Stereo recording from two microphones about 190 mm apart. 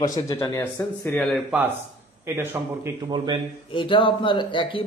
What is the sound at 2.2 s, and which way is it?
Speech, 10° right (ahead or behind).